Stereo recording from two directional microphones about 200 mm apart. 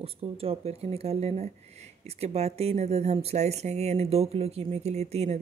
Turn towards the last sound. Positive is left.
turn(degrees=-30)  # may be behind; listen again after turning